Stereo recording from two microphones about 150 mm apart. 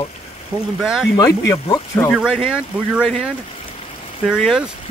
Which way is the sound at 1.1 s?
25° left (ahead or behind).